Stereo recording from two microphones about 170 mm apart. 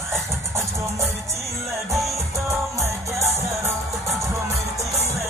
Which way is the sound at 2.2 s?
15° right (ahead or behind).